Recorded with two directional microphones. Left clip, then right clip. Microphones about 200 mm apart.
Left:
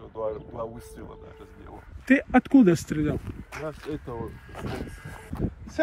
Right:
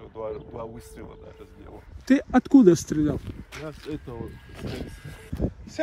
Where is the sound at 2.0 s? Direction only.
20° right (ahead or behind).